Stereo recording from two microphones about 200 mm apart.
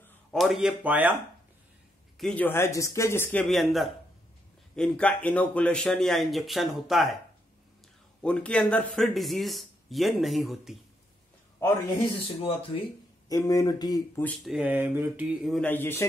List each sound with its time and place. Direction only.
0.0 s speech: centre (ahead or behind)
2.1 s speech: 5° left (ahead or behind)
8.2 s speech: 5° left (ahead or behind)
12.4 s speech: 30° left (ahead or behind)
13.3 s speech: 15° left (ahead or behind)
14.4 s speech: 5° right (ahead or behind); by 16.1 s 10° left (ahead or behind)